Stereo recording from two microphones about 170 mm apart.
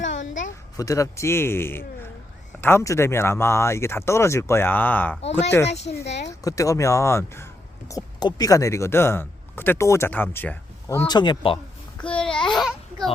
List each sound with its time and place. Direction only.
0.0 s a sound: 90° left
0.8 s speech: 20° left (ahead or behind)
5.6 s speech: 90° left
6.4 s speech: 20° left (ahead or behind)
12.0 s babbling: 5° left (ahead or behind)
12.3 s babbling: 30° left (ahead or behind)